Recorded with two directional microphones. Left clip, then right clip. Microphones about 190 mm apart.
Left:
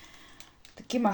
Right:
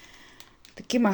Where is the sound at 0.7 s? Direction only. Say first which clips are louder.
Right 3 dB; 40° right (ahead or behind).